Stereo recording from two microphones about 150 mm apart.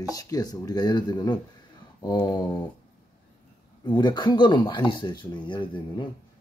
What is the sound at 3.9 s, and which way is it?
Speech, 30° left (ahead or behind).